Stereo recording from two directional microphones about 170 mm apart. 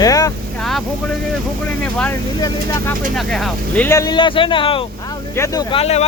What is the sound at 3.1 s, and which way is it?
Speech, centre (ahead or behind).